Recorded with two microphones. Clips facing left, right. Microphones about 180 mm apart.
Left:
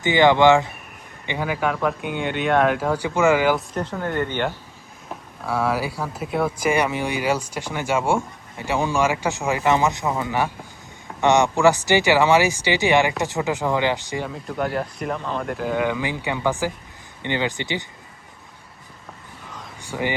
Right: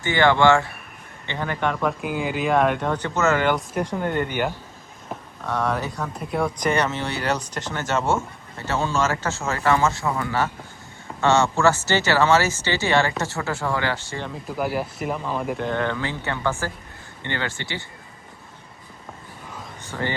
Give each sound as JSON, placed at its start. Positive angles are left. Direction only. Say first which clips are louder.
{"t": 0.0, "sound": "speech", "louder": "left 3 dB", "side_deg": 15}
{"t": 3.8, "sound": "speech", "louder": "right 1 dB", "side_deg": -15}
{"t": 5.5, "sound": "speech", "louder": "left 2 dB", "side_deg": 5}
{"t": 14.3, "sound": "speech", "louder": "right 2 dB", "side_deg": 0}
{"t": 19.8, "sound": "speech", "louder": "left 3 dB", "side_deg": 10}